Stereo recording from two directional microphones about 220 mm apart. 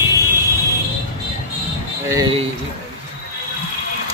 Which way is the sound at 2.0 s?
15° right (ahead or behind).